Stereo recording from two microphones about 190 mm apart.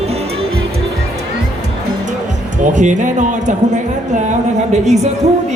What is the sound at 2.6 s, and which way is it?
A woman's voice, 40° right (ahead or behind).